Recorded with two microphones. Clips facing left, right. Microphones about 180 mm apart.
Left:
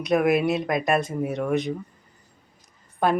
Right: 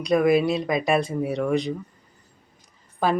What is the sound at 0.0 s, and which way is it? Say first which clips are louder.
Speech: right 1 dB; 5° left (ahead or behind).